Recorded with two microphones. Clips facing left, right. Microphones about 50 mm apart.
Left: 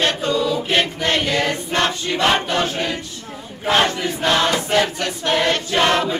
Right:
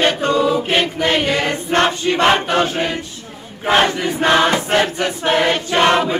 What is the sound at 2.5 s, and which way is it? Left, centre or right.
Choir, centre.